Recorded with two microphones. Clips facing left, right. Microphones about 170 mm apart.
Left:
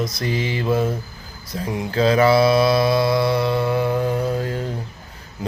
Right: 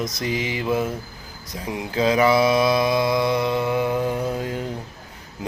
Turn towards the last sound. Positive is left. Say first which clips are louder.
# left 3 dB
turn(degrees=-15)  # may be behind; listen again after turning